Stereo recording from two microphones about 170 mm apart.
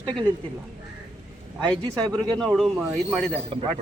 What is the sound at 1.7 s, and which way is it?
Speech, 5° left (ahead or behind).